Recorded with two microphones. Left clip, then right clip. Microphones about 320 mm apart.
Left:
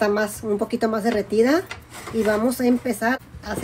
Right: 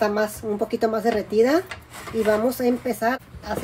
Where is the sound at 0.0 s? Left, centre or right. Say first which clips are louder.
Left 1 dB; left.